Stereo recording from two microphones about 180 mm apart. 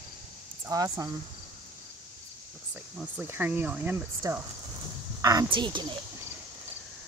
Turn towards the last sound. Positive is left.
turn(degrees=-25)  # may be behind; listen again after turning